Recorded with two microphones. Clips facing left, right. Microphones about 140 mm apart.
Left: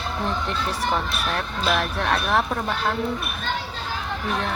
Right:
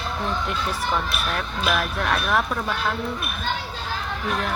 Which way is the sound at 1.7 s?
30° left (ahead or behind).